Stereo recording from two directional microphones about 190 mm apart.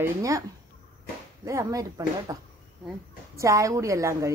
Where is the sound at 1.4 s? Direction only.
15° right (ahead or behind).